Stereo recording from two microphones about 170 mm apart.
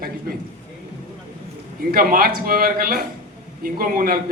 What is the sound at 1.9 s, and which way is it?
A man's voice, 60° right (ahead or behind).